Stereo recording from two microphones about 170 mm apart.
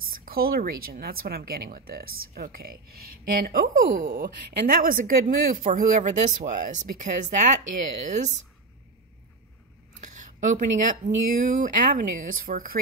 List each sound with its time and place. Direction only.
0.2 s speech: 60° right (ahead or behind); by 8.3 s 45° right (ahead or behind)
9.9 s speech: 45° right (ahead or behind)